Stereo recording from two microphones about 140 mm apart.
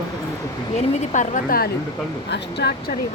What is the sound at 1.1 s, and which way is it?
Speech, 65° left (ahead or behind).